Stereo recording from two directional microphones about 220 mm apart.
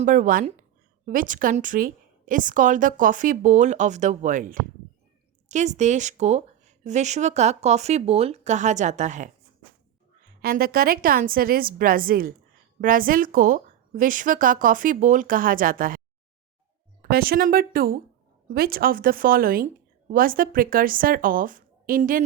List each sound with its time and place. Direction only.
0.0 s a woman's voice: 35° right (ahead or behind)
10.4 s a woman's voice: 40° right (ahead or behind)
17.0 s a woman's voice: 45° right (ahead or behind)